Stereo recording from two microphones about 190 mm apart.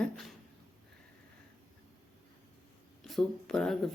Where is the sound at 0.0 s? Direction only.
Centre (ahead or behind).